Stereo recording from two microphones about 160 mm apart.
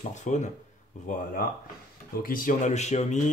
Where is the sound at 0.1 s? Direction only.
50° left (ahead or behind).